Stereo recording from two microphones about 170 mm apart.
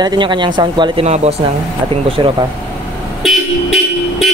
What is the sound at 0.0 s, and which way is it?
Speech, 25° right (ahead or behind).